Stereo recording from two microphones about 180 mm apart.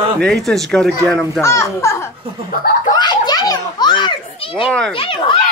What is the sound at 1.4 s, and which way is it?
A child's voice, 15° left (ahead or behind).